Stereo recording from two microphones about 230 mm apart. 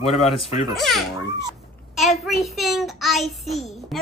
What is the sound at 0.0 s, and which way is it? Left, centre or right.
Speech, left.